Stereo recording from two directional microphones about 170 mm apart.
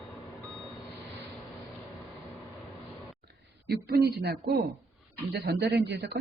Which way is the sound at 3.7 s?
65° right (ahead or behind).